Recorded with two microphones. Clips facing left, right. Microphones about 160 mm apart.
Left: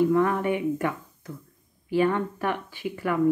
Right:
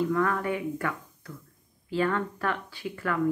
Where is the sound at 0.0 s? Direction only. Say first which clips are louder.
Left 5 dB; 20° left (ahead or behind).